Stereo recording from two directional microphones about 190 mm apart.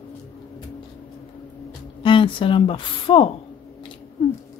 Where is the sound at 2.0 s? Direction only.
25° left (ahead or behind).